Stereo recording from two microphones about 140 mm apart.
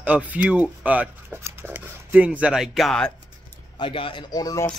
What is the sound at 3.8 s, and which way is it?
Speech, 40° left (ahead or behind).